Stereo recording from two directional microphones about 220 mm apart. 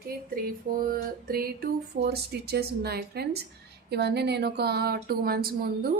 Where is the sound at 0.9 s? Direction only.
40° right (ahead or behind).